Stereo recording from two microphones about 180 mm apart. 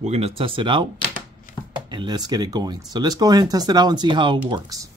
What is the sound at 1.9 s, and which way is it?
Speech, 25° right (ahead or behind).